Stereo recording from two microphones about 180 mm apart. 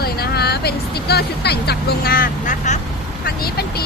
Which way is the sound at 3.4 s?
60° left (ahead or behind).